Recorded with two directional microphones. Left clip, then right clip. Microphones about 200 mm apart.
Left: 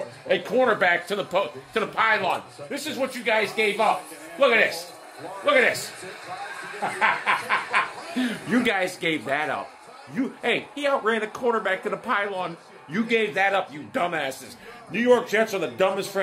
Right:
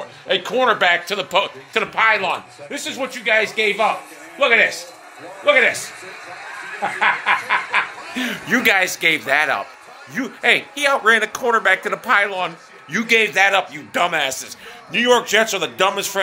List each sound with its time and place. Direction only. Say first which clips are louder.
0.3 s speech: right 4 dB; 5° left (ahead or behind)
1.4 s a man's voice: right 5 dB; 10° right (ahead or behind)
2.0 s a man's voice: right 5 dB; 35° right (ahead or behind)
7.0 s a man's voice: right 5 dB; 40° right (ahead or behind)
8.5 s a man's voice: right 8 dB; 5° right (ahead or behind)